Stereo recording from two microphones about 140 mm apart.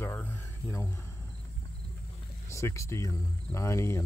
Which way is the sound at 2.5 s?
20° left (ahead or behind).